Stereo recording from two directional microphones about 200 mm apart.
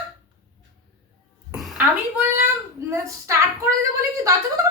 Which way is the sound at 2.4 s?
15° right (ahead or behind).